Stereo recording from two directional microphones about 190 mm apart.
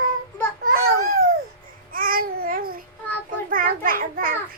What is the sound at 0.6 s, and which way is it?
Babbling, 45° right (ahead or behind).